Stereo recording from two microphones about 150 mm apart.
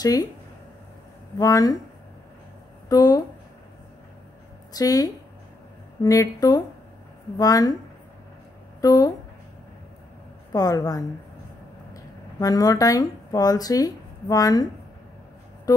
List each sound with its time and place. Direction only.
0.0 s a woman's voice: 25° left (ahead or behind)
1.4 s a woman's voice: 25° left (ahead or behind)
2.9 s speech: 25° left (ahead or behind)
4.7 s a woman's voice: 25° left (ahead or behind)
8.8 s a woman's voice: 25° left (ahead or behind)
10.5 s a woman's voice: 25° left (ahead or behind)